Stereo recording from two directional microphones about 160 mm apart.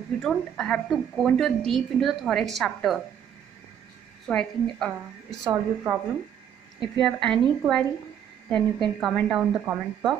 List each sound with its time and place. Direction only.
0.2 s a woman's voice: 5° left (ahead or behind)
4.3 s a woman's voice: 5° left (ahead or behind)
5.4 s speech: 20° right (ahead or behind)
6.8 s a woman's voice: 5° left (ahead or behind)